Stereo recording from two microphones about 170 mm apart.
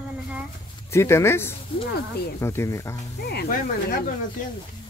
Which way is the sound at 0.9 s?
15° left (ahead or behind).